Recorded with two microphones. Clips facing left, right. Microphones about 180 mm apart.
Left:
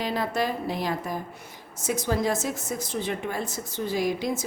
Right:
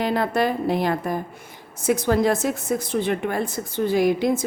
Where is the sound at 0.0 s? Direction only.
55° right (ahead or behind).